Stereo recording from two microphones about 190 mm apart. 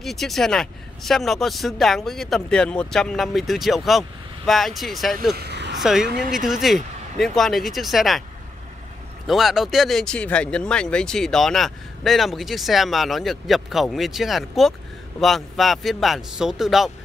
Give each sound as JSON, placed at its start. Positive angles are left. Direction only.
{"t": 0.0, "sound": "speech", "side_deg": 0}
{"t": 5.3, "sound": "a sound", "side_deg": -60}
{"t": 5.8, "sound": "speech", "side_deg": 0}
{"t": 9.3, "sound": "speech", "side_deg": 0}